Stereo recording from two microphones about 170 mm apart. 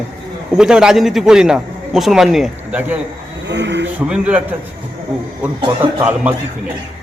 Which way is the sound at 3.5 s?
90° right.